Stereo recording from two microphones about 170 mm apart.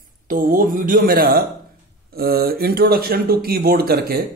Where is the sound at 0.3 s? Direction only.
55° right (ahead or behind).